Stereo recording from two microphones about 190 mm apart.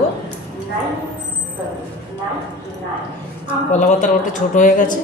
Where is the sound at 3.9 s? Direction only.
40° left (ahead or behind).